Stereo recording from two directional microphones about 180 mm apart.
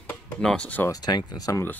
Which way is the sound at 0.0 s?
5° left (ahead or behind).